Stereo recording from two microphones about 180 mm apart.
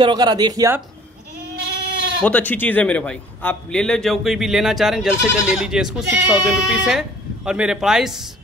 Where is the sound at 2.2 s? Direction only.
10° left (ahead or behind).